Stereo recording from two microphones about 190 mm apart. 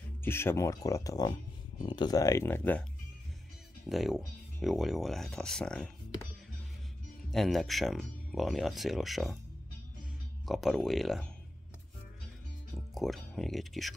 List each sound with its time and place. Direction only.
0.2 s speech: 10° left (ahead or behind)
3.9 s speech: centre (ahead or behind)
7.2 s speech: centre (ahead or behind)
10.4 s speech: centre (ahead or behind)
12.9 s speech: centre (ahead or behind)